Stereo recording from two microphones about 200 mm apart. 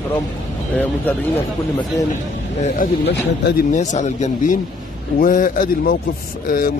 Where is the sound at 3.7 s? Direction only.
35° left (ahead or behind).